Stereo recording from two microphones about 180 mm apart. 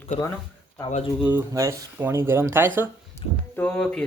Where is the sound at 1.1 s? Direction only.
10° right (ahead or behind).